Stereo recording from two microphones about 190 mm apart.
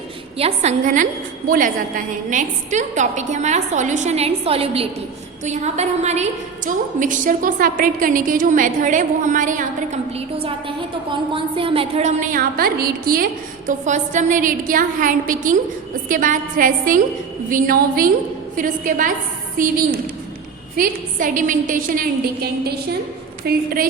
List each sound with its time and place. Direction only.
0.3 s a woman's voice: 35° right (ahead or behind); by 13.2 s 50° right (ahead or behind)
13.7 s a woman's voice: 40° right (ahead or behind)